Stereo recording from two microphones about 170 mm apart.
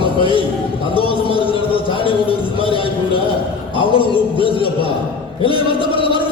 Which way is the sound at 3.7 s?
30° left (ahead or behind).